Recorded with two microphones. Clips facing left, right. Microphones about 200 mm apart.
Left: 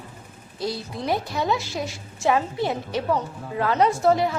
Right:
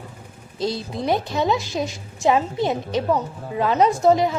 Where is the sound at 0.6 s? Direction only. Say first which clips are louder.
Right 4 dB; 20° right (ahead or behind).